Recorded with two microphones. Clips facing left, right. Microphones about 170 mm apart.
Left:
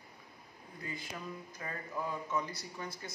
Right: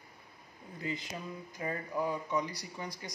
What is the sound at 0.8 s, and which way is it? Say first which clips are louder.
Speech: right 4 dB; 20° right (ahead or behind).